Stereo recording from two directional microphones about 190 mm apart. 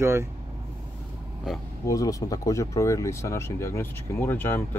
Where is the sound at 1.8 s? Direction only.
20° left (ahead or behind).